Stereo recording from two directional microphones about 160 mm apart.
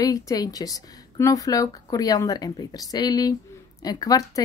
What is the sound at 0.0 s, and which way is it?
A woman's voice, 20° left (ahead or behind).